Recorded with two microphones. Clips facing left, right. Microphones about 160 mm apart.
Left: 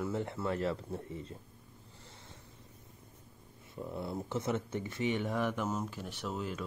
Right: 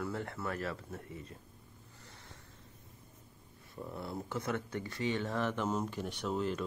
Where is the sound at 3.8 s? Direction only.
20° left (ahead or behind).